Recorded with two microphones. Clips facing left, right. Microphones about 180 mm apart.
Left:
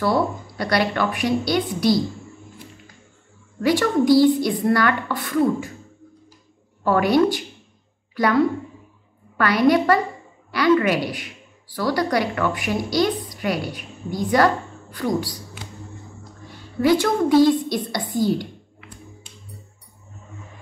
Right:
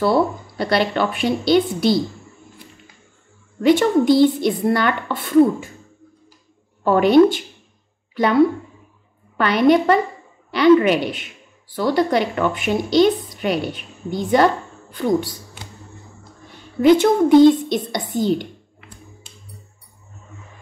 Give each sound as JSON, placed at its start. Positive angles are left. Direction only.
{"t": 0.0, "sound": "a woman's voice", "side_deg": -25}
{"t": 3.6, "sound": "a woman's voice", "side_deg": -25}
{"t": 6.8, "sound": "a woman's voice", "side_deg": -25}
{"t": 9.4, "sound": "a woman's voice", "side_deg": -25}
{"t": 16.8, "sound": "a woman's voice", "side_deg": -20}